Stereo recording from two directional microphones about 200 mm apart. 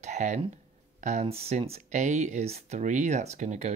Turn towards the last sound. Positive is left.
turn(degrees=-35)  # may be behind; listen again after turning